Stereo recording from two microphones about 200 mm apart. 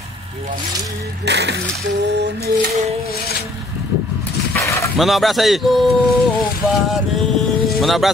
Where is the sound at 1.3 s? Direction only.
60° right (ahead or behind).